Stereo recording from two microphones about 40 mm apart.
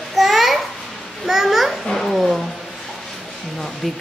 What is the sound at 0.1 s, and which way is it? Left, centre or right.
Babbling, centre.